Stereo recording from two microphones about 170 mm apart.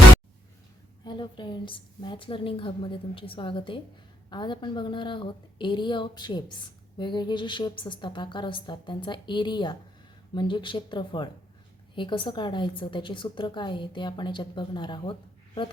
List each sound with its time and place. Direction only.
1.0 s a woman's voice: 25° left (ahead or behind)